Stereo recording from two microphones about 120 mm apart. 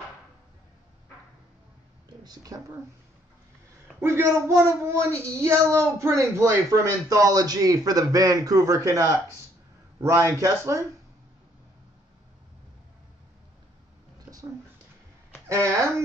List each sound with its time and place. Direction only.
2.2 s speech: 35° right (ahead or behind)
4.0 s speech: 25° right (ahead or behind)
10.3 s speech: 25° right (ahead or behind)
15.4 s speech: 25° right (ahead or behind)